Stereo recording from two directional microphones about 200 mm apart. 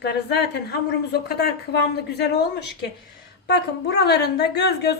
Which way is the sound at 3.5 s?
55° left (ahead or behind).